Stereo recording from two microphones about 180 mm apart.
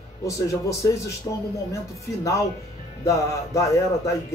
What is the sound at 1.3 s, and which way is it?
Speech, 20° left (ahead or behind).